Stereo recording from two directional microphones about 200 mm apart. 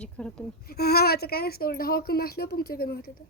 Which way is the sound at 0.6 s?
50° left (ahead or behind).